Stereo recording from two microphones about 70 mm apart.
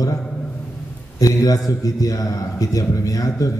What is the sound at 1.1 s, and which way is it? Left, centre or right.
Speech, left.